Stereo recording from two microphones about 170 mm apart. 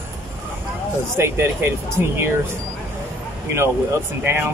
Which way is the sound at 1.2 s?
15° right (ahead or behind).